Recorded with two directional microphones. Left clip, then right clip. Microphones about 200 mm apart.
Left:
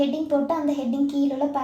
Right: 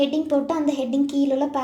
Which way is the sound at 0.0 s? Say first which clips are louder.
Right 1 dB; 30° right (ahead or behind).